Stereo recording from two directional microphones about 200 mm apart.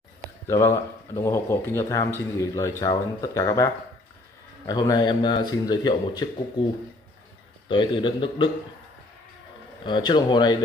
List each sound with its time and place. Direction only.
0.5 s speech: 15° left (ahead or behind)
7.6 s speech: 25° left (ahead or behind)
9.8 s speech: 25° left (ahead or behind)